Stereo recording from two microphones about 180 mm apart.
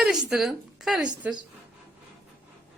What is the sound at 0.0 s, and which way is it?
A woman's voice, centre (ahead or behind).